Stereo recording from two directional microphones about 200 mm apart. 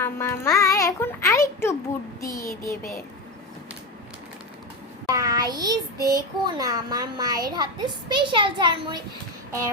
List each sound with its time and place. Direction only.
0.0 s a child's voice: 15° left (ahead or behind)
5.0 s a sound: 15° right (ahead or behind)
6.1 s a child's voice: 20° right (ahead or behind)